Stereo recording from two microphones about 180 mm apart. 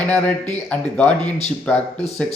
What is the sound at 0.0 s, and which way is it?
Speech, 10° left (ahead or behind).